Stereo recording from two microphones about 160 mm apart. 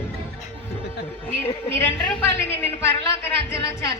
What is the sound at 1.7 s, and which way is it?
A woman's voice, 15° left (ahead or behind).